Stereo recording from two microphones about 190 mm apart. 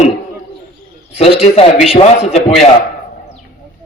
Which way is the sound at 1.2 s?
30° left (ahead or behind).